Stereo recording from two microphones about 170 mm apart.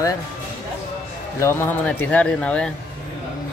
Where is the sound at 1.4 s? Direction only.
15° left (ahead or behind).